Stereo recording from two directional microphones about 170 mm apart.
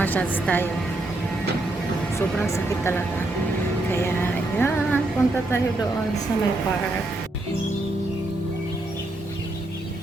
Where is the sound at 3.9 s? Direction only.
15° left (ahead or behind).